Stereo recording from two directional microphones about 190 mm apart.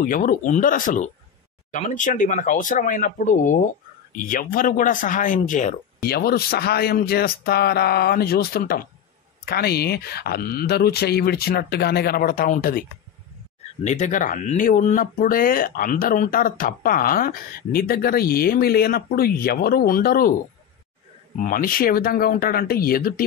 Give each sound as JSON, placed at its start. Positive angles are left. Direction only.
{"t": 0.0, "sound": "speech", "side_deg": 45}
{"t": 6.0, "sound": "speech", "side_deg": 55}
{"t": 13.8, "sound": "speech", "side_deg": 40}
{"t": 21.4, "sound": "speech", "side_deg": 50}